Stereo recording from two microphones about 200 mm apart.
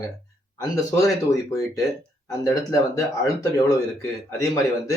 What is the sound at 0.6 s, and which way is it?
Speech, 15° left (ahead or behind).